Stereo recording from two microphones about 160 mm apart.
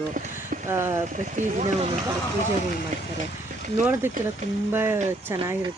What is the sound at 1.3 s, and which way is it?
Speech, 45° right (ahead or behind).